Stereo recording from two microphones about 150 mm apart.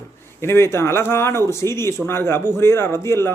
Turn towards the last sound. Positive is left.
turn(degrees=15)  # may be behind; listen again after turning